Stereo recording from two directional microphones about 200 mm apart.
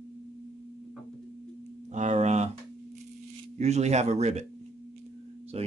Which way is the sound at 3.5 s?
35° right (ahead or behind).